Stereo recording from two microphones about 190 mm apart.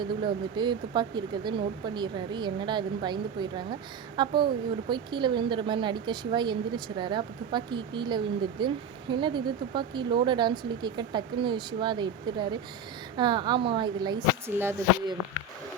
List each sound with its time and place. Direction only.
0.0 s a woman's voice: 25° right (ahead or behind)